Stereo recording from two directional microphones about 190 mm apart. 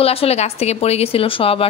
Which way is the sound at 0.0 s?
30° left (ahead or behind).